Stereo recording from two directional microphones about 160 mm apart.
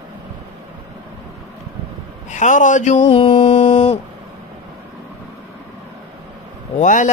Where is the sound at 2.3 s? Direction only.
50° left (ahead or behind); by 4.0 s 35° left (ahead or behind).